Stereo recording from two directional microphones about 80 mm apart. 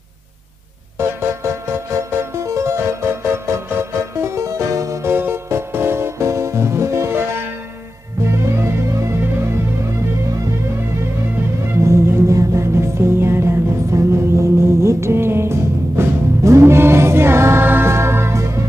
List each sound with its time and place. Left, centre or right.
0.9 s music: right
5.1 s music: right
8.3 s music: right
9.2 s music: right
11.6 s music: right